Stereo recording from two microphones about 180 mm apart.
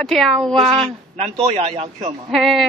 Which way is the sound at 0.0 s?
Centre (ahead or behind).